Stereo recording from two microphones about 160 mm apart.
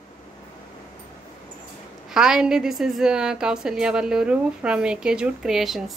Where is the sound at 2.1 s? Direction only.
5° right (ahead or behind).